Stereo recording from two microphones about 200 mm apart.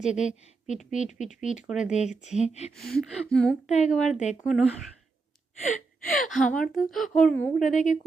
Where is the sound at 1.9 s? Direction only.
35° left (ahead or behind).